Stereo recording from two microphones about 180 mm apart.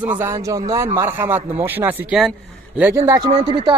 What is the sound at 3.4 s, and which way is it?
Speech, 25° right (ahead or behind).